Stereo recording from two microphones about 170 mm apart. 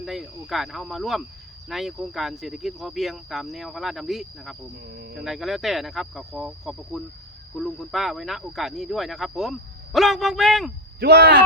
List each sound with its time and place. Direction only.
0.0 s speech: centre (ahead or behind)
4.9 s speech: 65° right (ahead or behind)
5.1 s speech: centre (ahead or behind)
11.0 s speech: 75° right (ahead or behind)